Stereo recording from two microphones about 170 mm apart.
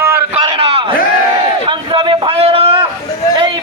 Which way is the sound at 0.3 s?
35° right (ahead or behind).